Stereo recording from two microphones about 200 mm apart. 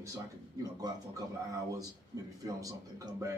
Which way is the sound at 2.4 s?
15° right (ahead or behind).